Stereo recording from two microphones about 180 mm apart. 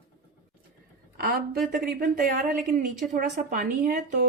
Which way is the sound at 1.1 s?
55° right (ahead or behind).